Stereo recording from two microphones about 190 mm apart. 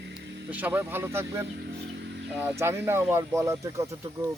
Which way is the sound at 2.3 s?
10° right (ahead or behind).